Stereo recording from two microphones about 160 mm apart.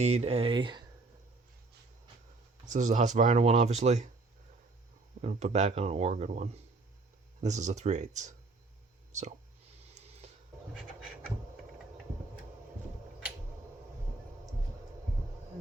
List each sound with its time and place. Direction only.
0.0 s speech: 40° right (ahead or behind)
2.7 s speech: 50° right (ahead or behind)
5.2 s speech: 40° right (ahead or behind)
9.9 s a sound: 45° right (ahead or behind)